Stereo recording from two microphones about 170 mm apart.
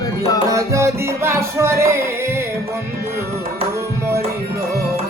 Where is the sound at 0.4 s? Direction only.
20° right (ahead or behind).